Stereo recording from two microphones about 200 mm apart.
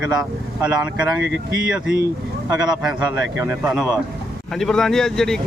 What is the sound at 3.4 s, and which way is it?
Speech, 10° right (ahead or behind).